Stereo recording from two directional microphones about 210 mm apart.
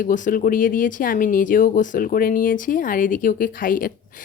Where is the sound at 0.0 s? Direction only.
40° left (ahead or behind).